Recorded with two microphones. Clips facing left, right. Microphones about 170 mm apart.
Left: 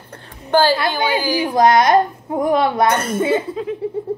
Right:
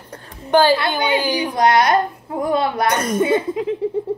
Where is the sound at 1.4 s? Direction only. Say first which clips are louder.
Left 4 dB; 25° left (ahead or behind).